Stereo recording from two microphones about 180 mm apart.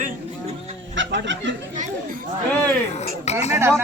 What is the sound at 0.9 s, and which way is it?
Fowl, 90° right.